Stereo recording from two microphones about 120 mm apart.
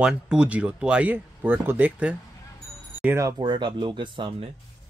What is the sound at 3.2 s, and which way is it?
Speech, 40° right (ahead or behind).